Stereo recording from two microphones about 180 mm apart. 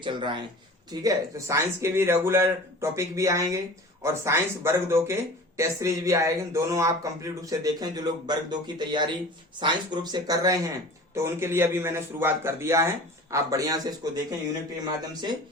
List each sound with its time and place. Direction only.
0.0 s speech: 25° right (ahead or behind)
1.0 s speech: 15° right (ahead or behind)